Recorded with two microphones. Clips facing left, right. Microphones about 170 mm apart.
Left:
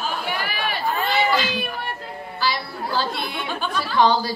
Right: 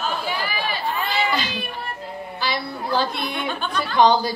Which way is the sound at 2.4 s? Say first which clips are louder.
Left 1 dB; 20° right (ahead or behind).